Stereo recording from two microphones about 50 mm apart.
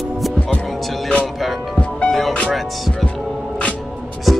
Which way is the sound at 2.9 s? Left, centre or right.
Left.